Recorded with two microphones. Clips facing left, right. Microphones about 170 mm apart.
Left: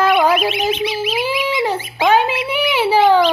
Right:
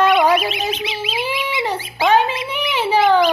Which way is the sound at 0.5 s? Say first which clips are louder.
Left 5 dB; 15° left (ahead or behind).